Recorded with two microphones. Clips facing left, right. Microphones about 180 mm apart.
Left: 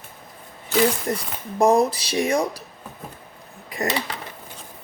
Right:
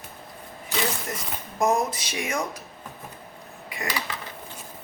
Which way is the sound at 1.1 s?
35° left (ahead or behind).